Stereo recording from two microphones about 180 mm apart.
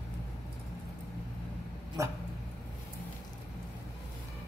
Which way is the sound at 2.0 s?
15° right (ahead or behind).